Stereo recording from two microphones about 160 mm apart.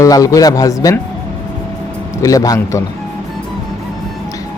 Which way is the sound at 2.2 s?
20° left (ahead or behind).